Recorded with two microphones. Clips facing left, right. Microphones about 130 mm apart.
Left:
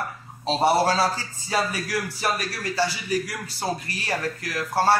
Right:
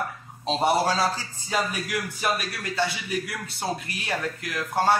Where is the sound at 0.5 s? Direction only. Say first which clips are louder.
Left 2 dB; 10° left (ahead or behind).